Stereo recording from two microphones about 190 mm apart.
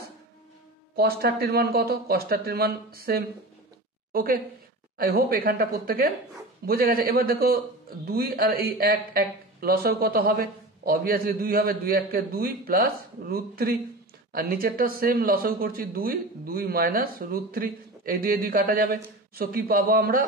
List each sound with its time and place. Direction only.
0.9 s a man's voice: 55° right (ahead or behind)